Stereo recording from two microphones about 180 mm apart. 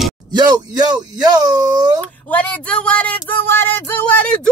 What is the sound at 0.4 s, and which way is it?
Speech, 20° right (ahead or behind).